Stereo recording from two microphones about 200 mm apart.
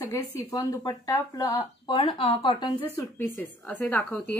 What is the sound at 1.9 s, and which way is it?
Speech, 30° left (ahead or behind).